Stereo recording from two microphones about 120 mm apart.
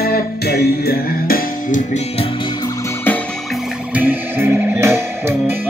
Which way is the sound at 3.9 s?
15° right (ahead or behind).